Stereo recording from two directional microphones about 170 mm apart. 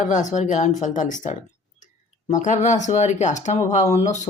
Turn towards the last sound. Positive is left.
turn(degrees=45)  # may be behind; listen again after turning